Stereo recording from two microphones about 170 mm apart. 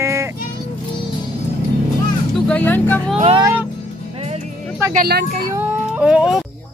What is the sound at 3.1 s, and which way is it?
Speech, 35° right (ahead or behind).